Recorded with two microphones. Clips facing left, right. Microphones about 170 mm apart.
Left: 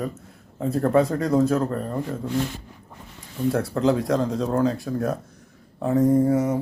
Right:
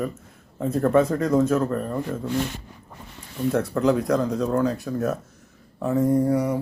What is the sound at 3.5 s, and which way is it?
Speech, 30° left (ahead or behind).